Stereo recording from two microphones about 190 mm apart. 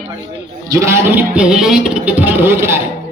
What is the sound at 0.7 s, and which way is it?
Speech, 15° right (ahead or behind).